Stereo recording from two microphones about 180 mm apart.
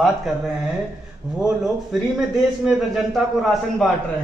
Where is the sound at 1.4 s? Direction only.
5° right (ahead or behind).